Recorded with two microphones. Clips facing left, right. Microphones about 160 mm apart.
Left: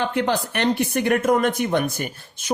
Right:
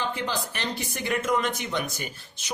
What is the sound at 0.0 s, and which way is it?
Speech, 60° left (ahead or behind).